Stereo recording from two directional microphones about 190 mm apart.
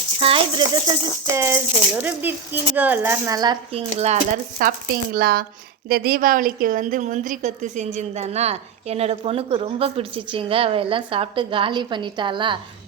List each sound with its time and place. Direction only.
0.2 s a woman's voice: 30° right (ahead or behind)
1.3 s speech: 15° right (ahead or behind); by 4.2 s 35° right (ahead or behind)
4.6 s a woman's voice: 50° right (ahead or behind); by 12.5 s 25° right (ahead or behind)